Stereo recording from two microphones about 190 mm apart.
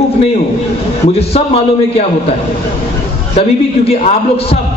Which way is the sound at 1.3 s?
30° left (ahead or behind).